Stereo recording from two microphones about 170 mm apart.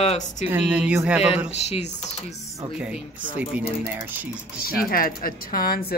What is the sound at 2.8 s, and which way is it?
Speech, 5° right (ahead or behind).